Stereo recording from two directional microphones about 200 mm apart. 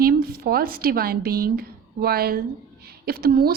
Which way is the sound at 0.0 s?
50° right (ahead or behind).